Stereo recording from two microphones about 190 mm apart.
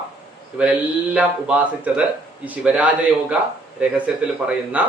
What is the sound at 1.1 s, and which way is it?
Speech, 5° right (ahead or behind).